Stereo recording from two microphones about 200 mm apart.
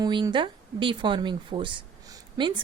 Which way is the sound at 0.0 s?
25° right (ahead or behind).